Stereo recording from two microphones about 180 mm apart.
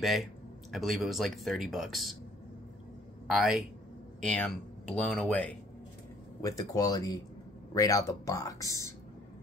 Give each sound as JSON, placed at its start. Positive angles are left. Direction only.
{"t": 0.7, "sound": "speech", "side_deg": 0}
{"t": 3.3, "sound": "speech", "side_deg": 0}
{"t": 6.4, "sound": "speech", "side_deg": 20}